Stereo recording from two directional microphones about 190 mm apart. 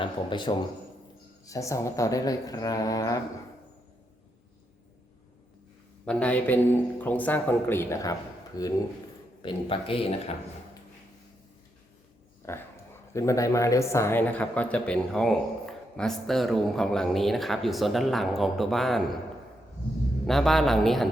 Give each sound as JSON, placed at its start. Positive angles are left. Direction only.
{"t": 0.0, "sound": "speech", "side_deg": 25}
{"t": 6.1, "sound": "speech", "side_deg": 5}
{"t": 12.5, "sound": "speech", "side_deg": 15}
{"t": 20.2, "sound": "speech", "side_deg": 0}